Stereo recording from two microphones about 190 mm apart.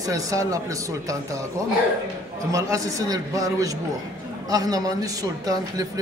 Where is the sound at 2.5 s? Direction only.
15° right (ahead or behind).